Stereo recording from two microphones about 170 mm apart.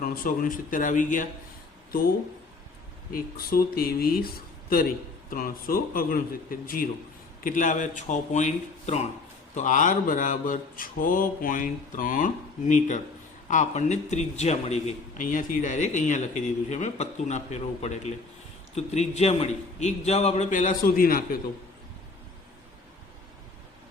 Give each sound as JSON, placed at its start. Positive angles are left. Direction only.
{"t": 0.0, "sound": "a man's voice", "side_deg": 55}
{"t": 3.1, "sound": "a man's voice", "side_deg": 60}